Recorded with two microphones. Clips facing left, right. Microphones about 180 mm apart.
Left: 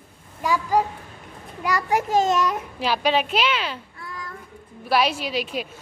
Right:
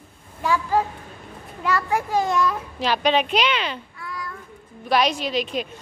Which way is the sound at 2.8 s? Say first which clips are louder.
Right 1 dB; 5° left (ahead or behind).